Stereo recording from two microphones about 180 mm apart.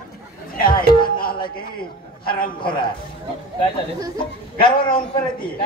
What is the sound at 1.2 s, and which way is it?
Speech, 55° left (ahead or behind).